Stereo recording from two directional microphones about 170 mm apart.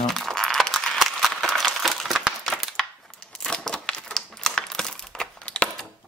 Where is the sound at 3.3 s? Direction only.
5° left (ahead or behind).